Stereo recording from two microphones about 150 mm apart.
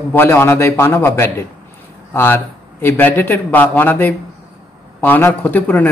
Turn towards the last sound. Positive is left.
turn(degrees=10)  # may be behind; listen again after turning